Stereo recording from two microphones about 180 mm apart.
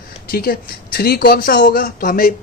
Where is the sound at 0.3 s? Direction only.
55° left (ahead or behind).